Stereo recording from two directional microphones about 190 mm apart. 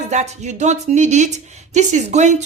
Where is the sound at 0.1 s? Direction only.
40° right (ahead or behind).